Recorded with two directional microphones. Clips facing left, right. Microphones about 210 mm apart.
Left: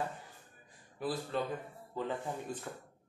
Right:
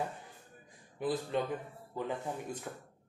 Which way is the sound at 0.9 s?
20° right (ahead or behind).